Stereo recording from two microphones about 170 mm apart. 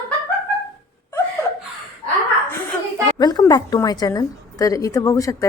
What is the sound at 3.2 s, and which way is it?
A woman's voice, 25° left (ahead or behind).